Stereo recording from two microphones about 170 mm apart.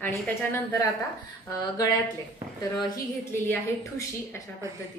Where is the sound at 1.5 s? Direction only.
20° left (ahead or behind).